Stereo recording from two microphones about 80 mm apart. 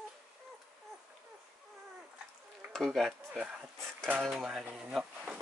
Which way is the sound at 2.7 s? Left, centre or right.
Centre.